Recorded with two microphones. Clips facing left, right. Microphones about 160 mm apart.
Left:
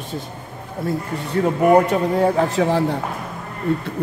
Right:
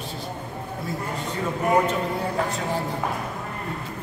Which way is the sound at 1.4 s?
75° left (ahead or behind).